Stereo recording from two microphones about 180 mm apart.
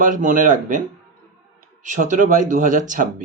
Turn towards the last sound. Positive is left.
turn(degrees=-45)  # may be behind; listen again after turning